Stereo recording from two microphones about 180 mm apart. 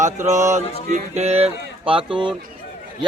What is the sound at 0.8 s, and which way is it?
Speech, 40° right (ahead or behind).